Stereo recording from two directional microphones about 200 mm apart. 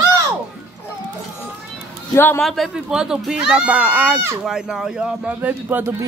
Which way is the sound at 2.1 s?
10° left (ahead or behind).